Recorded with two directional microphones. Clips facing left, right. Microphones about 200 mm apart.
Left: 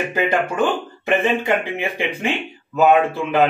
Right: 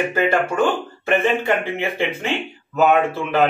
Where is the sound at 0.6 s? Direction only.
15° left (ahead or behind).